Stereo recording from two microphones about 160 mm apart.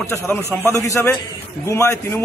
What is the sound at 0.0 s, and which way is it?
A man's voice, 15° left (ahead or behind).